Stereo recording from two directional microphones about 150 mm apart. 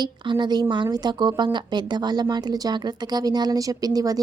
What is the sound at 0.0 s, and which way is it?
Speech, 30° right (ahead or behind).